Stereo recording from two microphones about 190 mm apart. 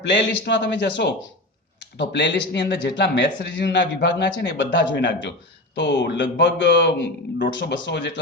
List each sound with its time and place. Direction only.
0.0 s speech: 70° left (ahead or behind)